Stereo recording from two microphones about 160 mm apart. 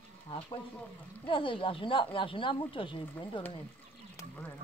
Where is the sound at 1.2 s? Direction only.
35° left (ahead or behind).